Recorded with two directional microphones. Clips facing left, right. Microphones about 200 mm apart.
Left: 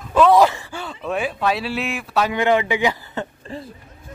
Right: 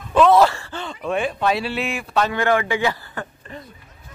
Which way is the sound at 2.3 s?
20° left (ahead or behind).